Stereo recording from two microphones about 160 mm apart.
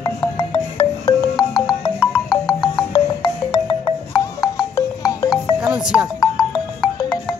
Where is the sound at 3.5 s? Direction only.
35° left (ahead or behind).